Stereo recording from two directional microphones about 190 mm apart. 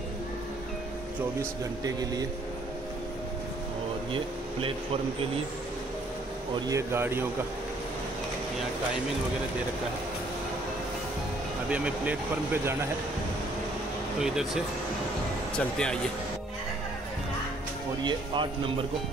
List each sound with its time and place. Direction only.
1.4 s speech: 20° right (ahead or behind)
4.1 s speech: 30° right (ahead or behind)
6.7 s speech: 15° right (ahead or behind)
11.7 s speech: 5° right (ahead or behind)
14.2 s speech: 5° right (ahead or behind)
18.0 s speech: 25° right (ahead or behind)